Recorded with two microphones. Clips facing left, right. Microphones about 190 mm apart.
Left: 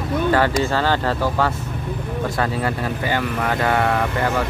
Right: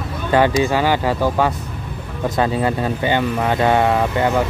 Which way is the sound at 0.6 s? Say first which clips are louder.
Right 3 dB; 15° right (ahead or behind).